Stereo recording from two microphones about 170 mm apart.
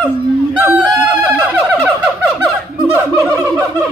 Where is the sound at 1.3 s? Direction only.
10° right (ahead or behind).